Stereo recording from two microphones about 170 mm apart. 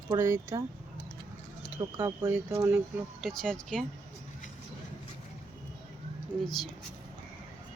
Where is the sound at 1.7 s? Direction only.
20° right (ahead or behind).